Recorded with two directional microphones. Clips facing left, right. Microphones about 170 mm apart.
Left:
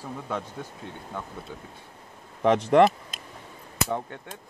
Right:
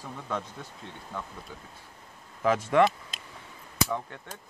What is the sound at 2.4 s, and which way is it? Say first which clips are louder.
Speech: left 4 dB; 30° left (ahead or behind).